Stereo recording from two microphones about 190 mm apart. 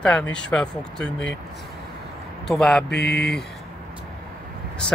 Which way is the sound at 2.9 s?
60° left (ahead or behind).